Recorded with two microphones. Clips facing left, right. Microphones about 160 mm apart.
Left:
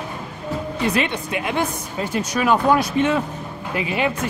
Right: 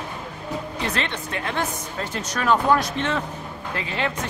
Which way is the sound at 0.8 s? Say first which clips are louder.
Left 7 dB; 10° left (ahead or behind).